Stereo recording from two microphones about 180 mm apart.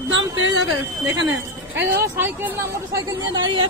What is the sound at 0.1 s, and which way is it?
A woman's voice, 90° right.